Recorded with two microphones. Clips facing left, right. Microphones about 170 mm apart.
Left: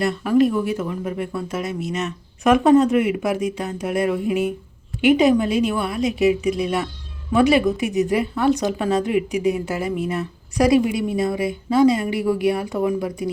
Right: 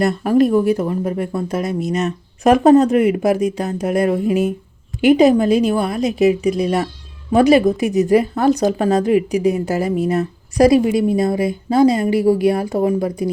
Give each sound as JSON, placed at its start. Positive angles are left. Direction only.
{"t": 0.0, "sound": "a woman's voice", "side_deg": -45}